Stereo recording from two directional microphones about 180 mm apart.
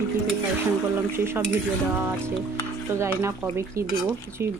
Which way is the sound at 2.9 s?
15° right (ahead or behind).